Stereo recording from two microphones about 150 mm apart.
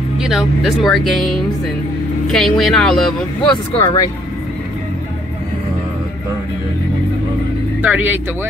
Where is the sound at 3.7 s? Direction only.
20° left (ahead or behind).